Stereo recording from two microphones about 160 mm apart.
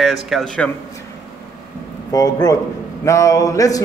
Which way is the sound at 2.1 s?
25° left (ahead or behind).